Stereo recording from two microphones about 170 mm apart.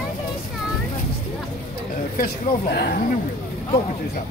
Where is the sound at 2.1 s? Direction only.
60° left (ahead or behind).